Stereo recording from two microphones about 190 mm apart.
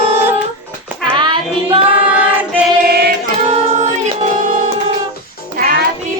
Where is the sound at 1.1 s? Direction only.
25° right (ahead or behind).